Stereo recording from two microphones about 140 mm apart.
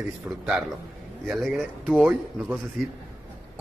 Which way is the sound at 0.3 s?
10° right (ahead or behind).